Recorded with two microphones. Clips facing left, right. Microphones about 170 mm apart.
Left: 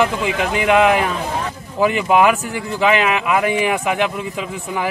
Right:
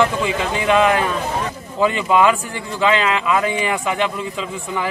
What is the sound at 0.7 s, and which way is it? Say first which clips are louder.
Speech: left 1 dB; 10° left (ahead or behind).